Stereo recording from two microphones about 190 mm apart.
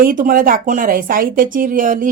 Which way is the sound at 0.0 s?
50° right (ahead or behind).